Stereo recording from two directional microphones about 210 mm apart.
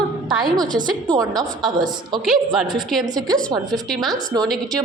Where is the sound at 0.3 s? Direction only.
20° right (ahead or behind).